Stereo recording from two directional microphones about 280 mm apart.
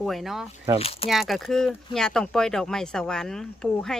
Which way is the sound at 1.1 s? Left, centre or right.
Centre.